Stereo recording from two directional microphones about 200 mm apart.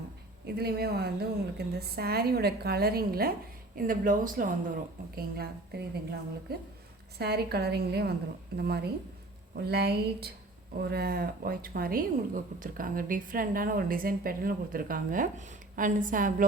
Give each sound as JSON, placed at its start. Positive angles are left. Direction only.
{"t": 0.4, "sound": "speech", "side_deg": -50}